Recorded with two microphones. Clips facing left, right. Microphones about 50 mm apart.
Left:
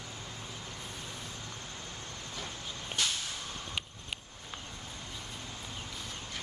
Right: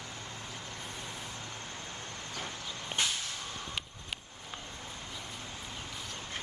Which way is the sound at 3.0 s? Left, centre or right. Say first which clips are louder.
Right 1 dB; right.